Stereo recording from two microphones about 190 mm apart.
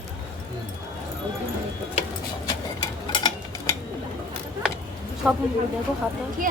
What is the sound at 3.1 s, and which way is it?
Tick-tock, 20° left (ahead or behind).